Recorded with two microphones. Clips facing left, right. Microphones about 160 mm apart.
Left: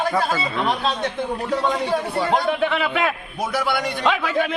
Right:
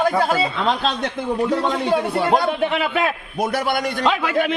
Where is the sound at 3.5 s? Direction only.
50° right (ahead or behind).